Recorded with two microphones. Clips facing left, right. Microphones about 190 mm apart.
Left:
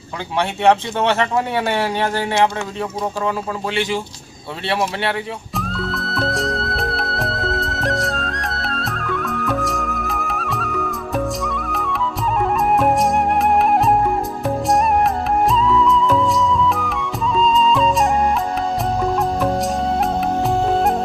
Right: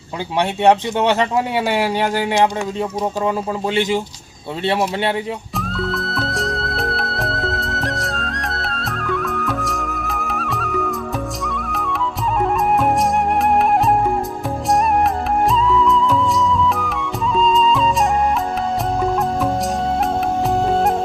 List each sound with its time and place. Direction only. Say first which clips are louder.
0.3 s a man's voice: right 1 dB; 15° right (ahead or behind)
4.6 s a man's voice: right 2 dB; 20° right (ahead or behind)
5.5 s music: even; centre (ahead or behind)
15.4 s music: even; centre (ahead or behind)
17.3 s music: even; centre (ahead or behind)
19.0 s music: left 1 dB; centre (ahead or behind)